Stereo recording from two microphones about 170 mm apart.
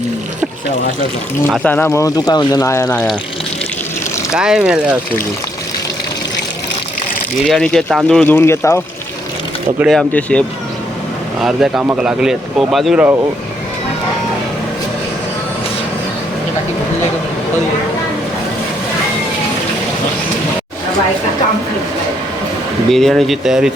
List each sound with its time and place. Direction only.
1.6 s speech: 10° left (ahead or behind)
4.3 s speech: 5° right (ahead or behind)
7.4 s speech: 5° left (ahead or behind)
9.7 s speech: centre (ahead or behind)
11.3 s speech: 5° right (ahead or behind)
22.9 s speech: centre (ahead or behind)